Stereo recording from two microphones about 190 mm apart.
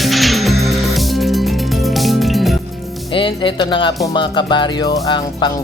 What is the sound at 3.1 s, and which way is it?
Music, 25° left (ahead or behind).